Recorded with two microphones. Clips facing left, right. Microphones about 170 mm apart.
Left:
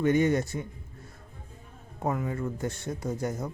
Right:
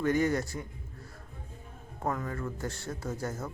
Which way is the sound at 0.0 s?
20° left (ahead or behind).